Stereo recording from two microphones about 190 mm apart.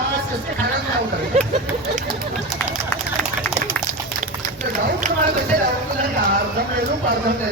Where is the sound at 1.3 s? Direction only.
35° right (ahead or behind).